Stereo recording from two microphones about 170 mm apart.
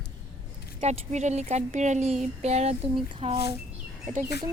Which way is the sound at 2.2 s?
40° right (ahead or behind).